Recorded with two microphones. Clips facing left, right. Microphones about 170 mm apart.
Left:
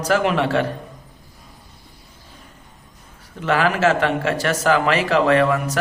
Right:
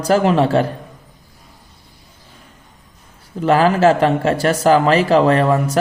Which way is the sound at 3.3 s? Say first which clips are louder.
Right 5 dB; 35° right (ahead or behind).